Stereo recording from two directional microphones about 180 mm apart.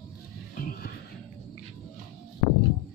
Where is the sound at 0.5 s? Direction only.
55° left (ahead or behind).